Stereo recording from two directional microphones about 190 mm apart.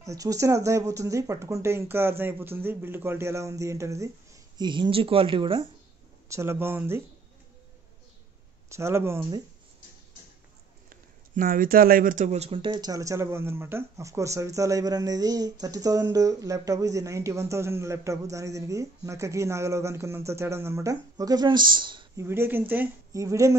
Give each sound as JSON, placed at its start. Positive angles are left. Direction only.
{"t": 0.0, "sound": "speech", "side_deg": -15}
{"t": 6.2, "sound": "speech", "side_deg": -15}
{"t": 8.7, "sound": "speech", "side_deg": -15}
{"t": 11.3, "sound": "speech", "side_deg": -45}
{"t": 22.2, "sound": "speech", "side_deg": -10}